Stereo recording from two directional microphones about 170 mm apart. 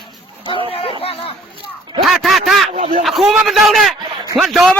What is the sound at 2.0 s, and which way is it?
A man's voice, centre (ahead or behind).